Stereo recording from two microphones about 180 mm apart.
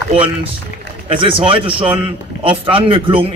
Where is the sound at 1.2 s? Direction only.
30° right (ahead or behind).